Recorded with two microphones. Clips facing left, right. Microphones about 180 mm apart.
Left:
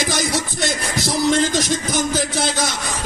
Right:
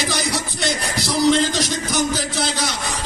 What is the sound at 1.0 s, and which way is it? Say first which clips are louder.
Music: right 1 dB; 50° left (ahead or behind).